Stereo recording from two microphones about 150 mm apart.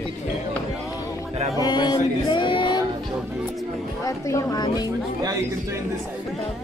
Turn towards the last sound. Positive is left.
turn(degrees=25)  # may be behind; listen again after turning